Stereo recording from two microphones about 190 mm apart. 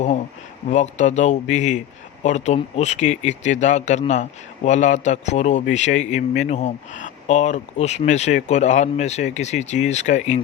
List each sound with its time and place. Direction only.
0.7 s speech: 40° left (ahead or behind)